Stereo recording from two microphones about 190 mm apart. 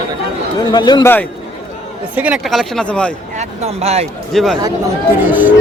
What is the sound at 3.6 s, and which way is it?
Speech, 35° right (ahead or behind).